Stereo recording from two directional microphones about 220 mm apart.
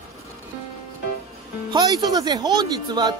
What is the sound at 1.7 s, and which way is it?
Speech, 20° right (ahead or behind).